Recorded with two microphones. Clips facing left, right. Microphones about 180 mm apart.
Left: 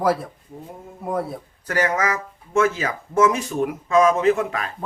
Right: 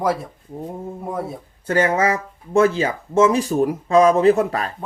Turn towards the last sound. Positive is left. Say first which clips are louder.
# right 4 dB
turn(degrees=-35)  # may be behind; listen again after turning